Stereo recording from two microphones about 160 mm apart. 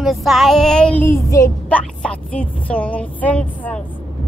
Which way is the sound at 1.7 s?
10° left (ahead or behind).